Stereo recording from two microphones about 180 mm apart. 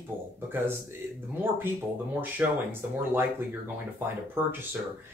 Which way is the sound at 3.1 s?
10° right (ahead or behind).